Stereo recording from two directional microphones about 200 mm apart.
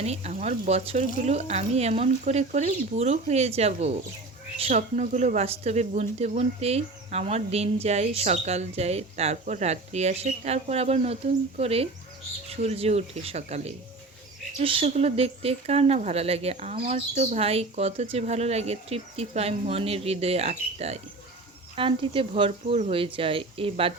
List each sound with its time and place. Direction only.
0.0 s speech: 30° right (ahead or behind)